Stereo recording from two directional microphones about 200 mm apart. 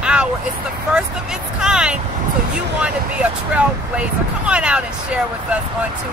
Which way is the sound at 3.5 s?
5° right (ahead or behind).